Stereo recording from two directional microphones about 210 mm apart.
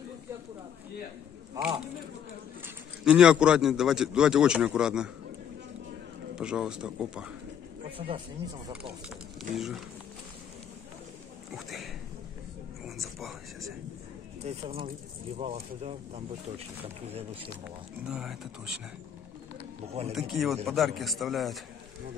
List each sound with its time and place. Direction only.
1.6 s a man's voice: 15° right (ahead or behind)
6.3 s a man's voice: 5° right (ahead or behind)
8.0 s speech: 30° right (ahead or behind)
9.4 s a man's voice: centre (ahead or behind)
11.5 s a man's voice: centre (ahead or behind)
12.8 s whispering: centre (ahead or behind)
15.3 s speech: 30° right (ahead or behind)
18.0 s a man's voice: 5° right (ahead or behind)
20.1 s a man's voice: centre (ahead or behind)